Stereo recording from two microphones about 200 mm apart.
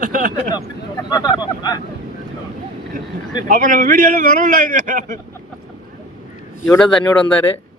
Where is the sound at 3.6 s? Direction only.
45° right (ahead or behind).